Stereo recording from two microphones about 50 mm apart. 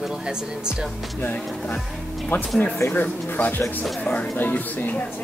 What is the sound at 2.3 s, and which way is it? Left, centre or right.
Speech, left.